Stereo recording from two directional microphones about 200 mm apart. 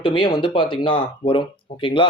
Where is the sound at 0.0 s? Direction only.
25° left (ahead or behind).